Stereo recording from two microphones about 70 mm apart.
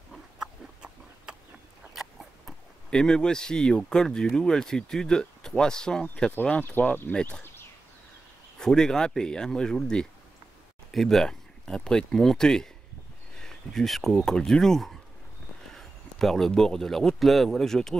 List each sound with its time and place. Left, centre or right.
2.0 s a sound: centre
4.4 s speech: centre
6.6 s speech: left
7.1 s speech: centre
8.5 s speech: centre